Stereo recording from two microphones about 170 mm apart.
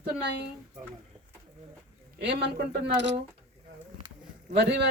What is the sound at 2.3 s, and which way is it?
Speech, 80° right.